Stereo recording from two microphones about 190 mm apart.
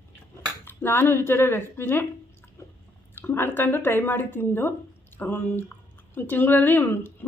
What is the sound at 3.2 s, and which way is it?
A woman's voice, 10° left (ahead or behind).